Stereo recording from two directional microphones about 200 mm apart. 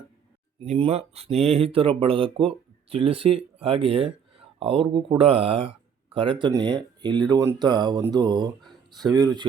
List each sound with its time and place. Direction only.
0.6 s speech: 30° right (ahead or behind)